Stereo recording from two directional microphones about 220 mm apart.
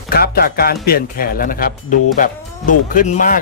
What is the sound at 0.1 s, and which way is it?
Speech, 45° left (ahead or behind).